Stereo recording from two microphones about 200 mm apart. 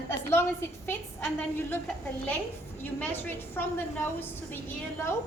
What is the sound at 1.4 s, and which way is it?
Speech, 10° left (ahead or behind).